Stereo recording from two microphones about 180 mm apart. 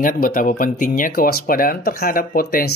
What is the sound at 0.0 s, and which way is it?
Speech, 50° left (ahead or behind).